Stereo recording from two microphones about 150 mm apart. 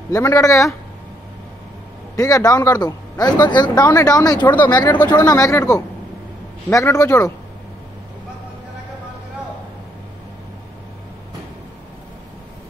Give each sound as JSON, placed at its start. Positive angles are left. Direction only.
{"t": 0.1, "sound": "a man's voice", "side_deg": 20}
{"t": 2.1, "sound": "a man's voice", "side_deg": 20}